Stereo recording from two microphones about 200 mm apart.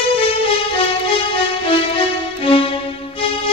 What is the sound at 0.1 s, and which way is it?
Music, 30° left (ahead or behind).